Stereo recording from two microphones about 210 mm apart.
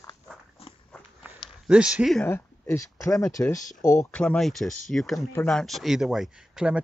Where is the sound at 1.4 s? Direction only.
5° right (ahead or behind).